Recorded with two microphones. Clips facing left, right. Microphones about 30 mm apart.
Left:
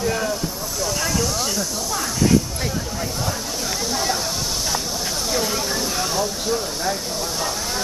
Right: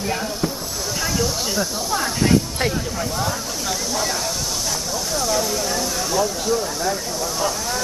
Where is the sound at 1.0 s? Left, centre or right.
Centre.